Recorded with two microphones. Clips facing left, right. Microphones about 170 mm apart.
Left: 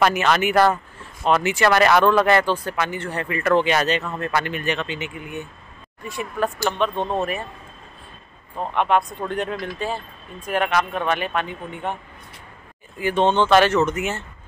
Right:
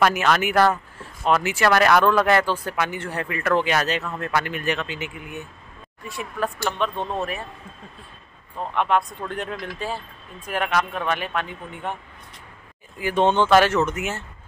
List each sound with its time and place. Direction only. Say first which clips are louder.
0.0 s speech: left 1 dB; 5° right (ahead or behind)
7.0 s speech: left 4 dB; 20° left (ahead or behind)
8.5 s speech: left 2 dB; centre (ahead or behind)
13.0 s speech: left 1 dB; 10° right (ahead or behind)